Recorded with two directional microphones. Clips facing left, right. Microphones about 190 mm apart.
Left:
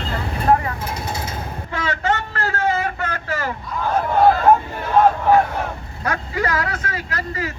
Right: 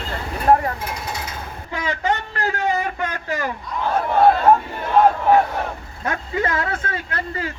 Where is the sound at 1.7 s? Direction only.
15° right (ahead or behind).